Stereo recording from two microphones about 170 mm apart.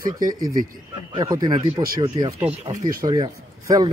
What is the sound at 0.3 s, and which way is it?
Speech, 20° right (ahead or behind).